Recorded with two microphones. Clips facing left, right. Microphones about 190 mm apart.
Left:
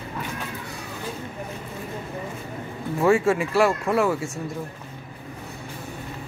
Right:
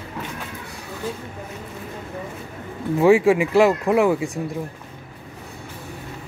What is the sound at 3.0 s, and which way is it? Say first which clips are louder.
Speech: right 4 dB; 15° right (ahead or behind).